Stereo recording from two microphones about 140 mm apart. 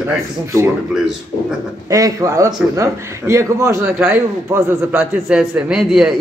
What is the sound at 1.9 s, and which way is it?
A man's voice, 25° right (ahead or behind).